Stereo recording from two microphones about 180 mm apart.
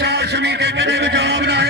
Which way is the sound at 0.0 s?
65° right (ahead or behind).